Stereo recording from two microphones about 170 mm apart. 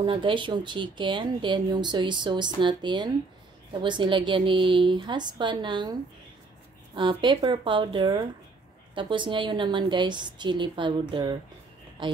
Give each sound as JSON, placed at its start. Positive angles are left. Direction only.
{"t": 0.0, "sound": "speech", "side_deg": -30}
{"t": 7.0, "sound": "speech", "side_deg": -30}